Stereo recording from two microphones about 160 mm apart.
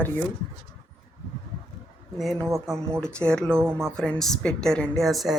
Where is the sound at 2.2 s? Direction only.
Centre (ahead or behind).